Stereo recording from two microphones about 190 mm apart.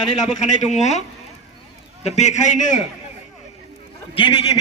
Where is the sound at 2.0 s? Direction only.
35° left (ahead or behind).